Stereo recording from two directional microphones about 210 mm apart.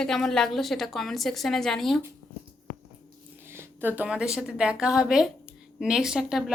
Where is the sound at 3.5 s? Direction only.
10° right (ahead or behind).